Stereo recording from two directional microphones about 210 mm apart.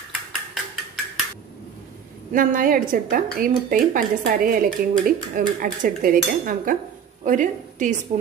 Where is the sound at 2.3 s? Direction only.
40° right (ahead or behind).